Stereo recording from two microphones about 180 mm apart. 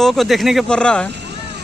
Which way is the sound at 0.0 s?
Centre (ahead or behind).